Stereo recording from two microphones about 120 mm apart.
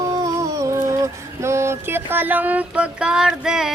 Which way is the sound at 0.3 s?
25° right (ahead or behind).